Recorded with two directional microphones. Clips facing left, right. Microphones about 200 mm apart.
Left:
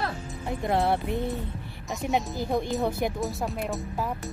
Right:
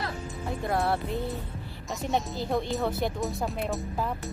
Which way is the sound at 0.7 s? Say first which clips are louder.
Left 3 dB; 20° left (ahead or behind).